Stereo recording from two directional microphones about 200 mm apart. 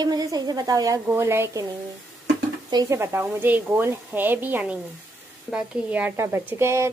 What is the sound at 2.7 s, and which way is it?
A woman's voice, 15° right (ahead or behind).